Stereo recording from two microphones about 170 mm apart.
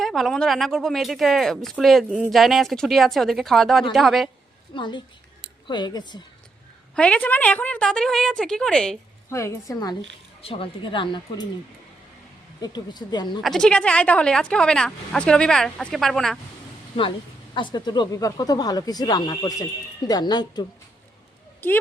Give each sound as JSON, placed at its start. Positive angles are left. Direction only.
{"t": 0.0, "sound": "speech", "side_deg": 0}
{"t": 4.7, "sound": "speech", "side_deg": 25}
{"t": 6.9, "sound": "speech", "side_deg": 5}
{"t": 9.3, "sound": "speech", "side_deg": 15}
{"t": 10.4, "sound": "speech", "side_deg": 30}
{"t": 12.5, "sound": "speech", "side_deg": 25}
{"t": 13.4, "sound": "speech", "side_deg": 5}
{"t": 17.5, "sound": "speech", "side_deg": 25}
{"t": 21.6, "sound": "speech", "side_deg": 10}